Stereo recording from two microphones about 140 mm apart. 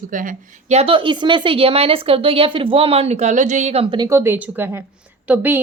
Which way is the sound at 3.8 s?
35° right (ahead or behind).